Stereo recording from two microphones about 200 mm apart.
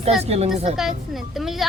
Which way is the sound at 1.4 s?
Centre (ahead or behind).